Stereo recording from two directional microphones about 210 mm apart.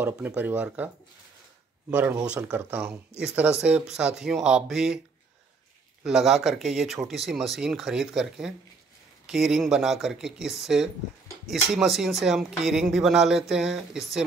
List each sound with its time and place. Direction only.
0.0 s speech: 10° right (ahead or behind)
1.9 s speech: 5° right (ahead or behind)
6.0 s speech: centre (ahead or behind)